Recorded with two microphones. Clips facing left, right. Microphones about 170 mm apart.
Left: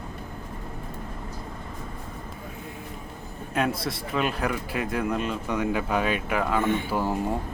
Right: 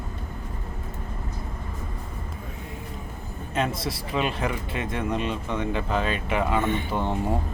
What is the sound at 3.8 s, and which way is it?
Speech, centre (ahead or behind).